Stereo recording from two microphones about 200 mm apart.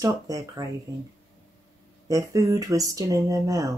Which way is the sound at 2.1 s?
15° right (ahead or behind).